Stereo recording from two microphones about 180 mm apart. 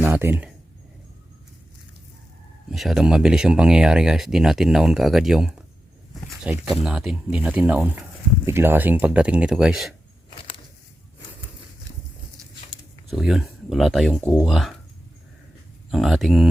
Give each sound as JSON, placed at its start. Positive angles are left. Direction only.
{"t": 0.0, "sound": "speech", "side_deg": -10}
{"t": 2.6, "sound": "speech", "side_deg": 0}
{"t": 10.2, "sound": "a sound", "side_deg": 30}
{"t": 13.1, "sound": "speech", "side_deg": 0}
{"t": 15.9, "sound": "speech", "side_deg": 0}